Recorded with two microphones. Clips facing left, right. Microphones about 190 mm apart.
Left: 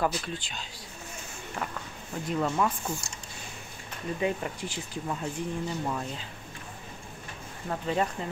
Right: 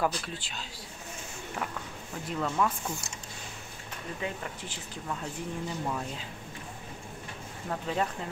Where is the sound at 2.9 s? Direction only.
20° right (ahead or behind).